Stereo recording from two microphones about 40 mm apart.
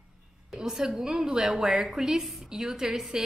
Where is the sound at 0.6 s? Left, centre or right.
Centre.